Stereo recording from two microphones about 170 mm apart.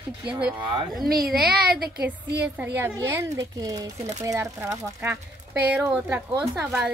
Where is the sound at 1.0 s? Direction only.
60° right (ahead or behind).